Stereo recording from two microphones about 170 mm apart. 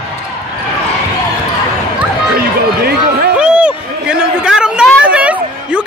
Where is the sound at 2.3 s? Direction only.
65° right (ahead or behind).